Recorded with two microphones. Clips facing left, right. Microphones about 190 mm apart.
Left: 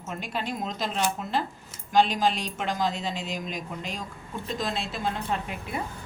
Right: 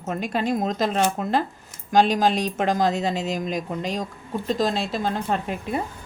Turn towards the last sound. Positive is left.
turn(degrees=-40)  # may be behind; listen again after turning